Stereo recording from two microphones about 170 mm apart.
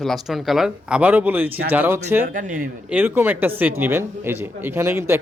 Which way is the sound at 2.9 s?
10° right (ahead or behind).